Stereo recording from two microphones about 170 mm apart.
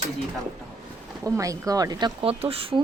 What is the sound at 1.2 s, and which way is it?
Speech, 20° right (ahead or behind).